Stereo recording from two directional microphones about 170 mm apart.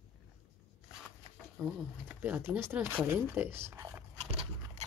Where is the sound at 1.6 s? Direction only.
10° right (ahead or behind).